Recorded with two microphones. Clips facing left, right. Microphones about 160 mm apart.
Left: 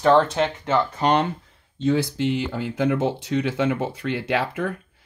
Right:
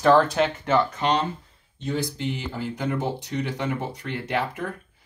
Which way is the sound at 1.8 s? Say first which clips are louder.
Left 7 dB; 90° left.